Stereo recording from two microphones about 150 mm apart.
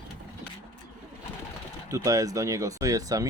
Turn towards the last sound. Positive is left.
turn(degrees=-25)  # may be behind; listen again after turning